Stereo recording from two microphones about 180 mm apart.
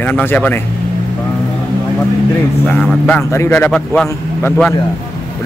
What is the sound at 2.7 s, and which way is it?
Speech, 5° left (ahead or behind).